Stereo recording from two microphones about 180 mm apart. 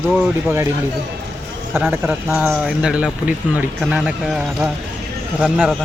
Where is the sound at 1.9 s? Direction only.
5° right (ahead or behind).